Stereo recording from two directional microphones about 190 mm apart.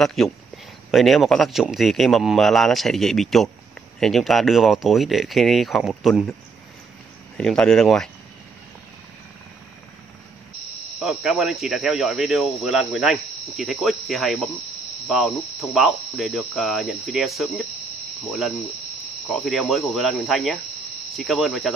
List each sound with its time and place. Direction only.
0.0 s speech: centre (ahead or behind)
7.3 s speech: 5° left (ahead or behind)
11.0 s speech: centre (ahead or behind)